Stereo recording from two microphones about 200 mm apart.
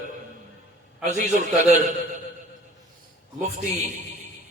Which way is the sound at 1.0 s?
40° right (ahead or behind).